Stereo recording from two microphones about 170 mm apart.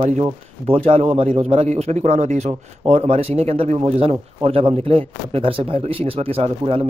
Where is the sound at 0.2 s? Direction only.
35° right (ahead or behind).